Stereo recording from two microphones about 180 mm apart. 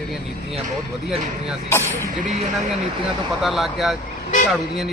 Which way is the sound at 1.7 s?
15° left (ahead or behind).